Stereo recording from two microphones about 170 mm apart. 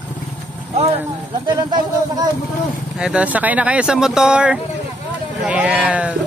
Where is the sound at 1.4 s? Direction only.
25° right (ahead or behind).